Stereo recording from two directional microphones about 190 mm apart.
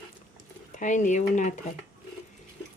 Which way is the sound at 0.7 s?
40° left (ahead or behind).